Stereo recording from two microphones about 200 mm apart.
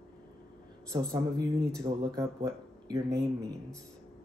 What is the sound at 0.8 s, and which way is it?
Speech, 20° right (ahead or behind).